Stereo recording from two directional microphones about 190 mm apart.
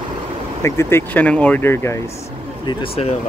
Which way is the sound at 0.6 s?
15° left (ahead or behind).